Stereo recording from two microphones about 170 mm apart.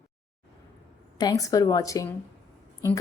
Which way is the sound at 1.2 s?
20° left (ahead or behind).